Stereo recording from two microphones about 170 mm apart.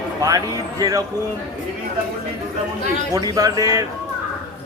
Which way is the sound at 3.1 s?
20° right (ahead or behind).